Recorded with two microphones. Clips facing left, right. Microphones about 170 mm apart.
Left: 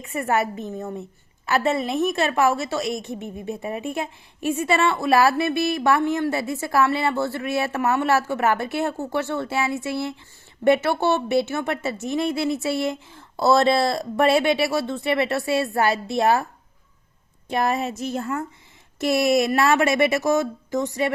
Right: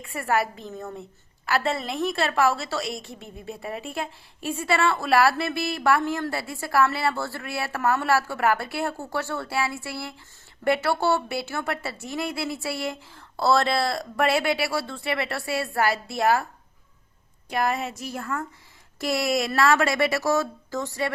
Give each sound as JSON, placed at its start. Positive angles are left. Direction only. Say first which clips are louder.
{"t": 0.0, "sound": "a woman's voice", "louder": "left 2 dB", "side_deg": 20}
{"t": 17.5, "sound": "a woman's voice", "louder": "left 3 dB", "side_deg": 25}